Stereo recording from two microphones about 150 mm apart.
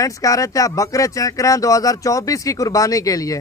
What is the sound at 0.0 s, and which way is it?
A man's voice, 20° left (ahead or behind).